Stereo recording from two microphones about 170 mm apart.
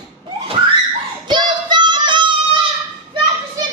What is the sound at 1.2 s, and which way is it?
Child singing, 25° right (ahead or behind).